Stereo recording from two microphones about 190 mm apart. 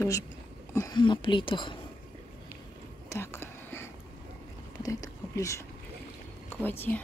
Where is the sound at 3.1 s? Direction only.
15° left (ahead or behind).